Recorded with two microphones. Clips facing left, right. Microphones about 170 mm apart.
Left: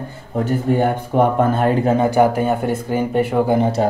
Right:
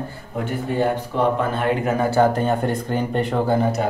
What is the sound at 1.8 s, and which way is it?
Speech, 20° left (ahead or behind).